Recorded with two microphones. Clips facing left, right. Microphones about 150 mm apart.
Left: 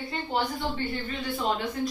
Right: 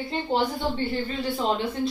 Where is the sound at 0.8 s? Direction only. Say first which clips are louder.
Right 4 dB; 30° right (ahead or behind).